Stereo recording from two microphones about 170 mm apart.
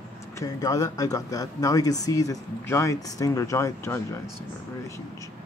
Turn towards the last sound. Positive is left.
turn(degrees=15)  # may be behind; listen again after turning